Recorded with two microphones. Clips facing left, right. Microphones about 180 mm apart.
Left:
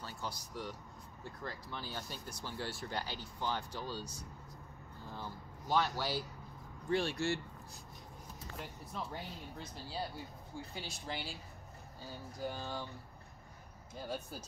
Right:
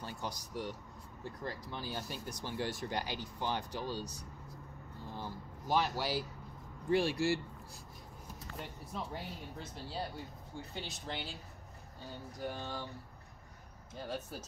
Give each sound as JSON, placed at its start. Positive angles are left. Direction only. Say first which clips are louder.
{"t": 0.0, "sound": "speech", "louder": "right 2 dB", "side_deg": -15}
{"t": 5.1, "sound": "speech", "louder": "right 2 dB", "side_deg": -15}
{"t": 8.4, "sound": "speech", "louder": "right 1 dB", "side_deg": 0}
{"t": 13.9, "sound": "speech", "louder": "right 1 dB", "side_deg": 0}